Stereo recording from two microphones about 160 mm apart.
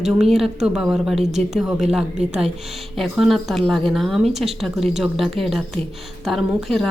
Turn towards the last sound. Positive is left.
turn(degrees=0)  # may be behind; listen again after turning